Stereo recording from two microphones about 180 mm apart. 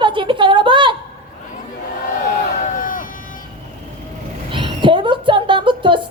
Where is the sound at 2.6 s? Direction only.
50° left (ahead or behind).